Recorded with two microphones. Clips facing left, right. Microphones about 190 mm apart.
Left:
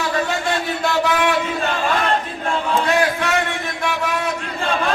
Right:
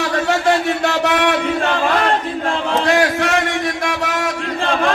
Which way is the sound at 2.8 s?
90° right.